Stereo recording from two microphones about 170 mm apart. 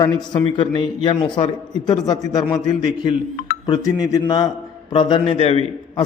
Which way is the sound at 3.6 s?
25° left (ahead or behind).